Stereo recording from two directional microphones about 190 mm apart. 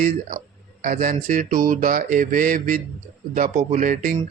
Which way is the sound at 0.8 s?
45° right (ahead or behind).